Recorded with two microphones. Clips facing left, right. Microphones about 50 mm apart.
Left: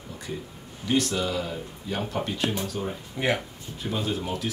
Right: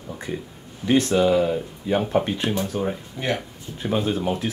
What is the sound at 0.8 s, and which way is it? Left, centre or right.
Speech, right.